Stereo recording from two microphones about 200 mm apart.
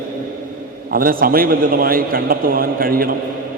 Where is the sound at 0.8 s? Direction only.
45° right (ahead or behind).